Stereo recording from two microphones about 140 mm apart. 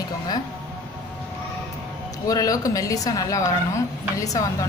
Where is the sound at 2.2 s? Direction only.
25° left (ahead or behind).